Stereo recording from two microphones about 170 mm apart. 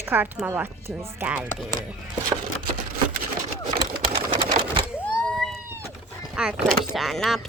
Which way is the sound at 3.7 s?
60° right (ahead or behind).